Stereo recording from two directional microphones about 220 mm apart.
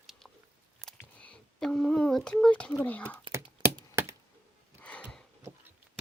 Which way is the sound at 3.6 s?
20° right (ahead or behind).